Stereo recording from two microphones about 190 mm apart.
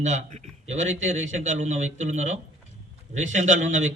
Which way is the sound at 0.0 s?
40° right (ahead or behind).